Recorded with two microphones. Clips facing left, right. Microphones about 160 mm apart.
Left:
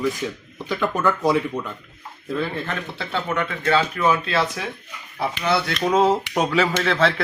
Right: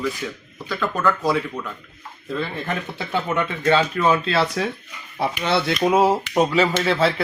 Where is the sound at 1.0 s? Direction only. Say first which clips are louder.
Even; 15° left (ahead or behind).